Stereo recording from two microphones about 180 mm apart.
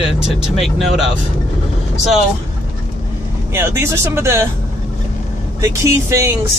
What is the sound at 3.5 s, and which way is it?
Speech, 15° right (ahead or behind).